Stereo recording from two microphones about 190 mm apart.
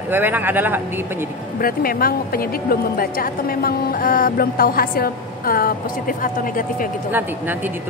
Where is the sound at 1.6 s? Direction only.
50° left (ahead or behind).